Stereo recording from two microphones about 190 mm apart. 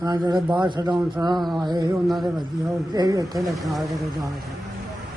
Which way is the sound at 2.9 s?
20° right (ahead or behind).